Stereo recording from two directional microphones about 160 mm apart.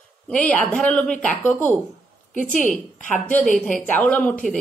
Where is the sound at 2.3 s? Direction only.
50° left (ahead or behind).